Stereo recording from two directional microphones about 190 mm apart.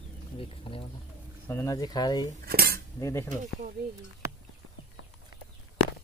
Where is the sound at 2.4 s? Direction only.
55° right (ahead or behind).